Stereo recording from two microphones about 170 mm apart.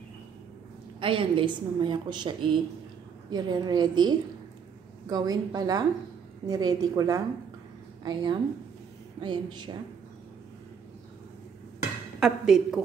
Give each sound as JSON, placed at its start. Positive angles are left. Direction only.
{"t": 1.0, "sound": "a woman's voice", "side_deg": -30}
{"t": 12.2, "sound": "a woman's voice", "side_deg": -5}